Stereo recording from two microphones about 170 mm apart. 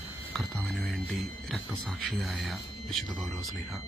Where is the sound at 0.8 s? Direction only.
Centre (ahead or behind).